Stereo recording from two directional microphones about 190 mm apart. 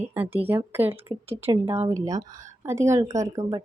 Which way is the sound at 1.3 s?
30° right (ahead or behind).